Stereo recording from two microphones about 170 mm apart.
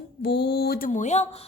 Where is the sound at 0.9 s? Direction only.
45° left (ahead or behind).